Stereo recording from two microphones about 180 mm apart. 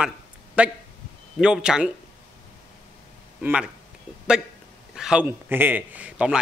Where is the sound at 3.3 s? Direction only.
5° right (ahead or behind).